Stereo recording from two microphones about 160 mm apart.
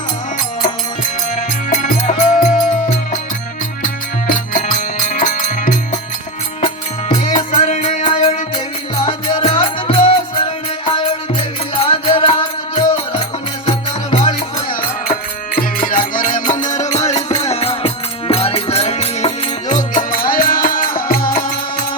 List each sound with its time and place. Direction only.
1.4 s music: 50° left (ahead or behind)
3.8 s music: 55° left (ahead or behind)
7.1 s music: 45° left (ahead or behind)
8.5 s music: 30° left (ahead or behind)
15.0 s music: 60° left (ahead or behind)